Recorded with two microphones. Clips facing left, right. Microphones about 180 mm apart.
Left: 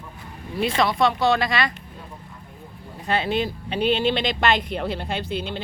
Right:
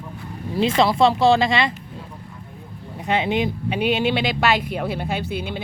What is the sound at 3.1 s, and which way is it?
Speech, 15° right (ahead or behind).